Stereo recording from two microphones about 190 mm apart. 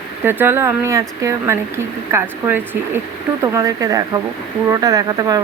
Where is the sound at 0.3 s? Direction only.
10° right (ahead or behind).